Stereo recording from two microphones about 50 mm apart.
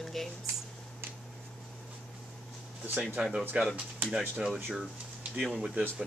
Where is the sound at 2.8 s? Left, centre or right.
Right.